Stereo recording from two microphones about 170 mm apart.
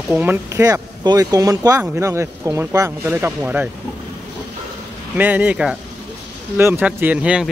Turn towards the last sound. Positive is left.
turn(degrees=-5)  # may be behind; listen again after turning